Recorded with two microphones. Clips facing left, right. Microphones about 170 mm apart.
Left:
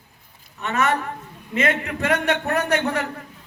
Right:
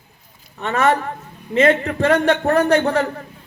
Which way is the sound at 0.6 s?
30° right (ahead or behind).